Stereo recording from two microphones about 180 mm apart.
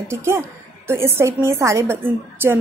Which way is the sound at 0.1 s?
15° right (ahead or behind).